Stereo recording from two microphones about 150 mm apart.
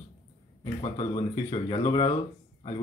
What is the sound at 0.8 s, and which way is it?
Speech, 35° left (ahead or behind).